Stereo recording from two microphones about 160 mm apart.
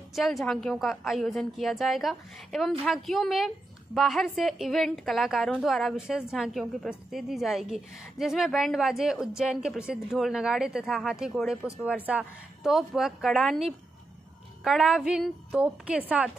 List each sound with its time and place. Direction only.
0.1 s speech: centre (ahead or behind)